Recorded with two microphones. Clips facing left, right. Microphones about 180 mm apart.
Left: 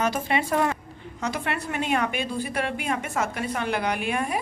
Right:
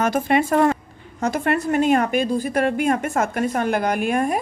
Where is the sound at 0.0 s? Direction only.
50° right (ahead or behind).